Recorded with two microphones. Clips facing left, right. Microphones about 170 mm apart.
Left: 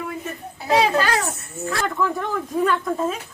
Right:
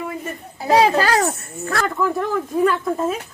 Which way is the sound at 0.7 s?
35° right (ahead or behind).